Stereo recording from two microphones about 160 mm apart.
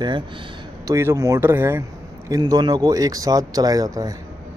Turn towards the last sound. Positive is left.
turn(degrees=-25)  # may be behind; listen again after turning